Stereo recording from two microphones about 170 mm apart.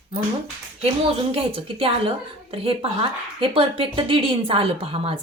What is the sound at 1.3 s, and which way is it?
A woman's voice, 35° right (ahead or behind).